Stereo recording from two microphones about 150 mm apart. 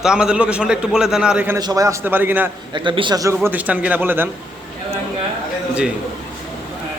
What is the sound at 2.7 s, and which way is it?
Speech, 30° right (ahead or behind).